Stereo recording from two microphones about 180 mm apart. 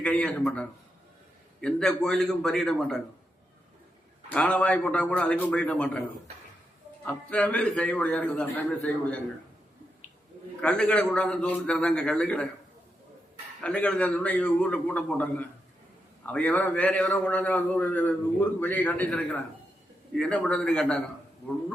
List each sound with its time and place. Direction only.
0.0 s a man's voice: 5° left (ahead or behind)
4.3 s a man's voice: 5° left (ahead or behind)
7.0 s a man's voice: 5° left (ahead or behind)
10.6 s a man's voice: 5° left (ahead or behind)
13.6 s a man's voice: 5° left (ahead or behind)